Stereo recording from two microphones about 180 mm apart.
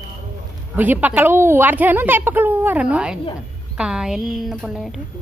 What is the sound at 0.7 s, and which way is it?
A woman's voice, 10° right (ahead or behind).